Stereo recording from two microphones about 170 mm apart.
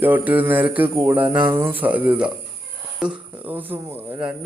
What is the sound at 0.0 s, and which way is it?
Speech, 10° right (ahead or behind).